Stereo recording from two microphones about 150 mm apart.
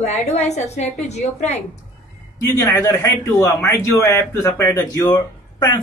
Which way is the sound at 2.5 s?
20° left (ahead or behind).